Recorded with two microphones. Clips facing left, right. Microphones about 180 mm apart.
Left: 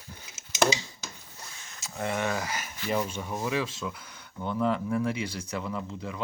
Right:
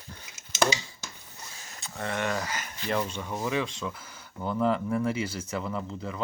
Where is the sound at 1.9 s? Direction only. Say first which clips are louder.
Left 1 dB; 10° left (ahead or behind).